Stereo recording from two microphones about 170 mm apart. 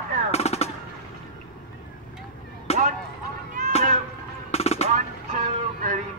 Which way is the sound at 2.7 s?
40° left (ahead or behind).